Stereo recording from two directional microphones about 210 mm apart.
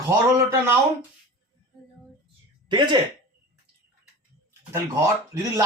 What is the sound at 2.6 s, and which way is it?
Speech, 20° right (ahead or behind).